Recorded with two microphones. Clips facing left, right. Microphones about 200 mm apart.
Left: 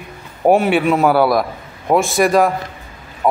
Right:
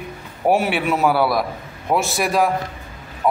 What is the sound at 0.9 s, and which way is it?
A man's voice, 55° left (ahead or behind).